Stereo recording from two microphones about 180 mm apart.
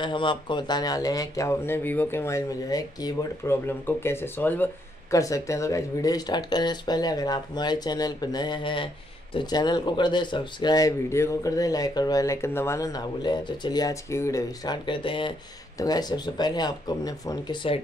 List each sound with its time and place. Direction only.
0.0 s speech: 25° left (ahead or behind)